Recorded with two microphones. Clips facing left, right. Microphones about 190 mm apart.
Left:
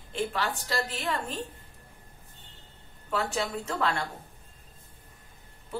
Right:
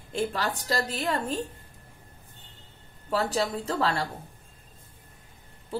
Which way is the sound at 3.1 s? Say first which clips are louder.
Right 3 dB; 35° right (ahead or behind).